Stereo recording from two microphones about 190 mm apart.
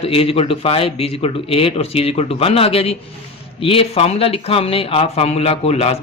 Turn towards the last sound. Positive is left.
turn(degrees=35)  # may be behind; listen again after turning